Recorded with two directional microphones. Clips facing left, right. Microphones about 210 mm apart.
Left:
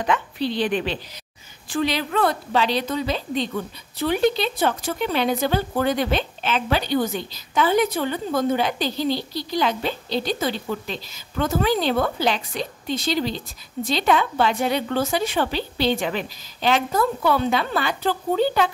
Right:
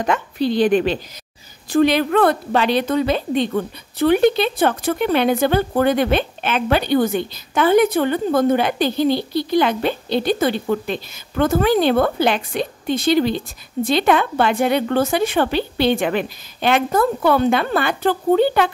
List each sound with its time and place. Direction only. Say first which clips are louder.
0.0 s a woman's voice: right 4 dB; 45° right (ahead or behind)